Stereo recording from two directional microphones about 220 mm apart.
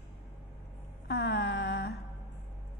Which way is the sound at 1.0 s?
50° left (ahead or behind).